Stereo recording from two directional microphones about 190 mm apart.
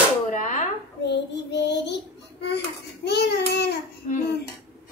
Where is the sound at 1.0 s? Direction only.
65° left (ahead or behind).